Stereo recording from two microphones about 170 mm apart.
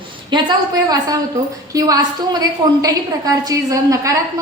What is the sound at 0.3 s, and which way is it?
A woman's voice, 25° right (ahead or behind).